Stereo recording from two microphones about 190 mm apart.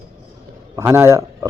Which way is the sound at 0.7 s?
15° right (ahead or behind).